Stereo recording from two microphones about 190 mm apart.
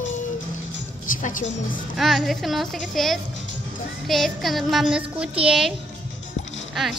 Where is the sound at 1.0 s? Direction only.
45° left (ahead or behind).